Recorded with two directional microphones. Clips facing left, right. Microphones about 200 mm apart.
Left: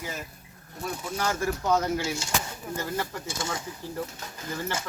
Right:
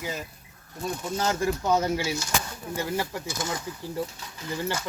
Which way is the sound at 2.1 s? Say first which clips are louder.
Right 1 dB; 25° left (ahead or behind).